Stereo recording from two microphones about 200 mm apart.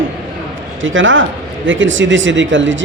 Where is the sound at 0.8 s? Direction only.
70° right (ahead or behind).